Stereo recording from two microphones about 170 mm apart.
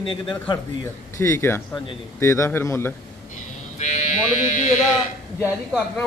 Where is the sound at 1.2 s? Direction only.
15° left (ahead or behind).